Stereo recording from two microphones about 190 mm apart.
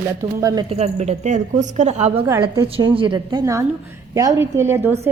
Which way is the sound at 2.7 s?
30° right (ahead or behind).